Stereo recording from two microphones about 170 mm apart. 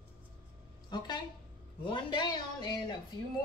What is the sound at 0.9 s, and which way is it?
Speech, 25° left (ahead or behind).